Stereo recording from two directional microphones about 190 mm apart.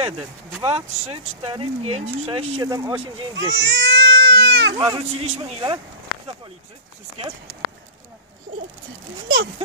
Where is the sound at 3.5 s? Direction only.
65° right (ahead or behind).